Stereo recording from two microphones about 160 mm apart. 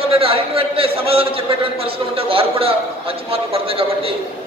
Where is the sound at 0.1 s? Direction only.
35° right (ahead or behind).